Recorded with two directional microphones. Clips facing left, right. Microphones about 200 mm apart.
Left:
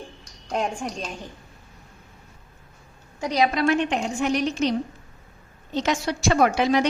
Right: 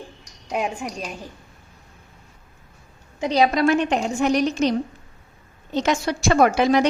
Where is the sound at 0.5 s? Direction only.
5° right (ahead or behind).